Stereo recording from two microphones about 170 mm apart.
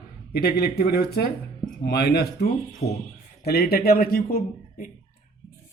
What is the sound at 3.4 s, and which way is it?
A man's voice, 65° left (ahead or behind).